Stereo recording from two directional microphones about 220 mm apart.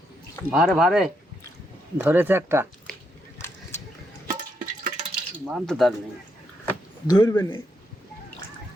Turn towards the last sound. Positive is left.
turn(degrees=20)  # may be behind; listen again after turning